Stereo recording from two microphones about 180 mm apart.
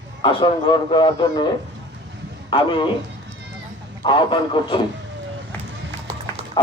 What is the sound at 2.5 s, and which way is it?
Speech, 25° left (ahead or behind).